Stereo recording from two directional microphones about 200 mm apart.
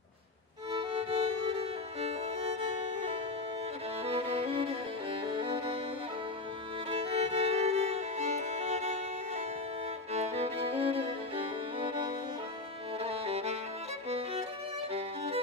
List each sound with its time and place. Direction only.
0.7 s music: 25° right (ahead or behind)
4.0 s violin: 30° right (ahead or behind)
5.2 s music: 25° right (ahead or behind)
6.9 s music: 30° right (ahead or behind)
10.1 s violin: 30° right (ahead or behind)
13.0 s music: 30° right (ahead or behind)